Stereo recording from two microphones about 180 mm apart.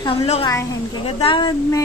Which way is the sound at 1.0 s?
30° left (ahead or behind).